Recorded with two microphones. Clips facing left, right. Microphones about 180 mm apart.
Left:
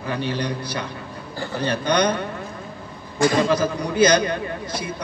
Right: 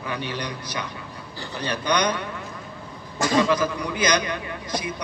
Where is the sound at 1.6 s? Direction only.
50° left (ahead or behind).